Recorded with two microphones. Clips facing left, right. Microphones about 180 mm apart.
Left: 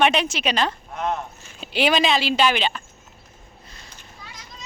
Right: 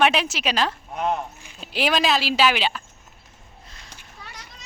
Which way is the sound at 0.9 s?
10° right (ahead or behind).